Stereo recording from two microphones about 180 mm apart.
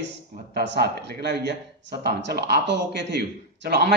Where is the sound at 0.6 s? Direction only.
65° right (ahead or behind).